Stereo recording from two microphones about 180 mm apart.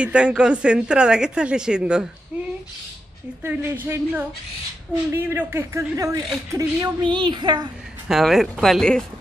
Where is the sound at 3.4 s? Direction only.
15° right (ahead or behind).